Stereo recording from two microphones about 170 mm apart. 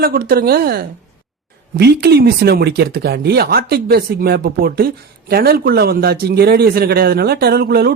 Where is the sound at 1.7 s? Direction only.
75° right (ahead or behind).